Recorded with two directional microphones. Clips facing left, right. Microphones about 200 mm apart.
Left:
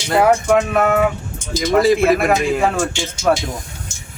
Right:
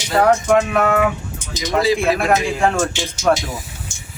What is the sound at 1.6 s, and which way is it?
Speech, 55° left (ahead or behind).